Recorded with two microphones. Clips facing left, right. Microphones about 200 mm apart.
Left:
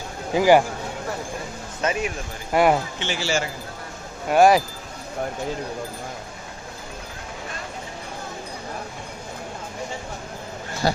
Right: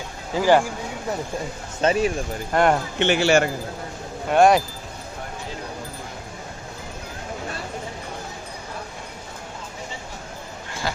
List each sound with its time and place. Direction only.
0.3 s speech: 10° left (ahead or behind)
1.8 s speech: 30° right (ahead or behind)
2.5 s speech: 5° left (ahead or behind)
3.0 s a man's voice: 60° right (ahead or behind)
4.3 s speech: centre (ahead or behind)
10.8 s a sound: 40° left (ahead or behind)